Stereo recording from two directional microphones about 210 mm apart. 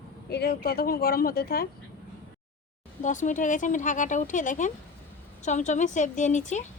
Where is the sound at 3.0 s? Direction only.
35° left (ahead or behind).